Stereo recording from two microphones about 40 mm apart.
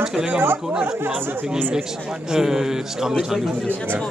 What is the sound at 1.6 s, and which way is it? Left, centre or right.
Speech, right.